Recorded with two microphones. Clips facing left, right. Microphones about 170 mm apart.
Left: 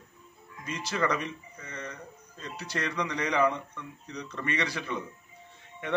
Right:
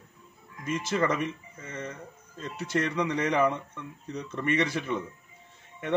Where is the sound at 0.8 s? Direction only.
25° right (ahead or behind).